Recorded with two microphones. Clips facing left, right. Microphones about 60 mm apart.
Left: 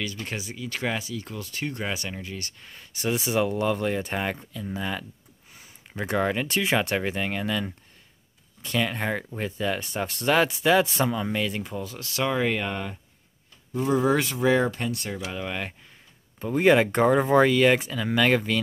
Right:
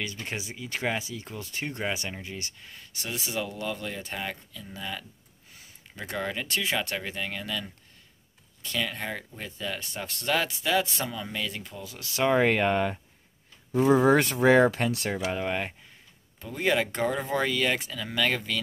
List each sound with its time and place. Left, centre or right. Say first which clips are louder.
0.0 s speech: left 2 dB; right
2.6 s speech: left 9 dB; centre
3.3 s speech: left 8 dB; left
5.9 s speech: left 7 dB; centre
11.8 s speech: left 5 dB; centre
12.1 s speech: right 3 dB; centre
12.4 s speech: right 4 dB; right
14.7 s speech: right 2 dB; right
15.1 s speech: right 3 dB; right
16.3 s speech: left 7 dB; left